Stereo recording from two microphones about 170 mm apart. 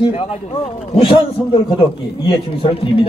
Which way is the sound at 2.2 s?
35° left (ahead or behind).